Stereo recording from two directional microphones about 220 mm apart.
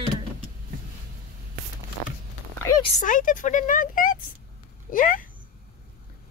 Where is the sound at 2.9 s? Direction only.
35° left (ahead or behind).